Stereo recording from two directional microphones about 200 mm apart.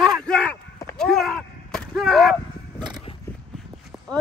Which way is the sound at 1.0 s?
Centre (ahead or behind).